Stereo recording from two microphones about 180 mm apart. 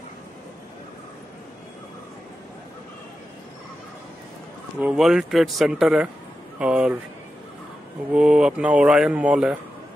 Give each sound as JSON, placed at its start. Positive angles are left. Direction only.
{"t": 4.7, "sound": "speech", "side_deg": -5}
{"t": 8.1, "sound": "speech", "side_deg": -5}